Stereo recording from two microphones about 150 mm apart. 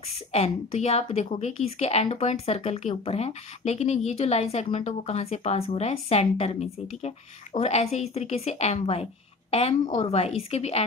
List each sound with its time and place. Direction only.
0.3 s a woman's voice: 45° left (ahead or behind)